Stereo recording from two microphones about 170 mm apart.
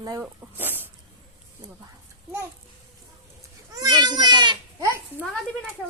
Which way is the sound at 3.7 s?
20° right (ahead or behind).